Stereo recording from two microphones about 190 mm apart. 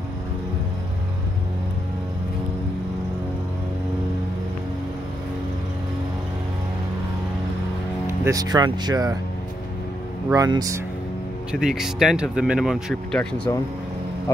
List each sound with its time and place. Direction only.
8.2 s speech: 20° right (ahead or behind)
10.3 s speech: 20° right (ahead or behind)
11.6 s speech: centre (ahead or behind)